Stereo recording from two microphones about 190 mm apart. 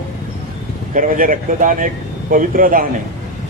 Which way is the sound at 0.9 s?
45° right (ahead or behind).